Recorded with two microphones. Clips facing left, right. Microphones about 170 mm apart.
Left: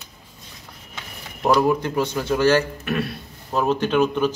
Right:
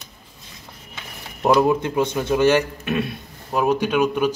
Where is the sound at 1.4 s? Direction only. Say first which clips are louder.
Right 1 dB; 20° right (ahead or behind).